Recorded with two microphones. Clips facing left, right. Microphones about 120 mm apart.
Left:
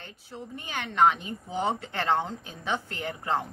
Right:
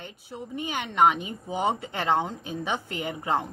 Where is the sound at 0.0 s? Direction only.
15° right (ahead or behind).